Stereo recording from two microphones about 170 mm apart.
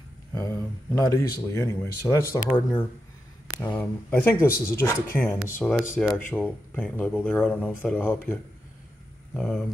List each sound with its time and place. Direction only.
0.3 s speech: 15° left (ahead or behind)